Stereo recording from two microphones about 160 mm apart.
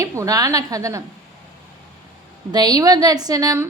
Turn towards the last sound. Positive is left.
turn(degrees=-20)  # may be behind; listen again after turning